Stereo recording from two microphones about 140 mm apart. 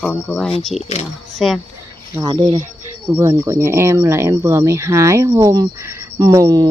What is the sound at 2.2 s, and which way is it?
Speech, 35° right (ahead or behind).